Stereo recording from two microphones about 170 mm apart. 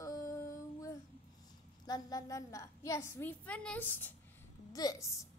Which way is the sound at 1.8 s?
20° left (ahead or behind).